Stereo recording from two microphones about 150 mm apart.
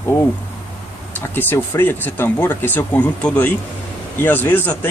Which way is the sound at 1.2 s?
15° left (ahead or behind).